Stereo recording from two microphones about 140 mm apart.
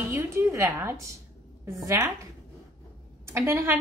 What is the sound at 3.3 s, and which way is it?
Speech, 15° right (ahead or behind).